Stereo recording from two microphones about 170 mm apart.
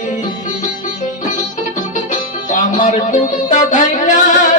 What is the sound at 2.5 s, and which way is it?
Speech, 45° left (ahead or behind).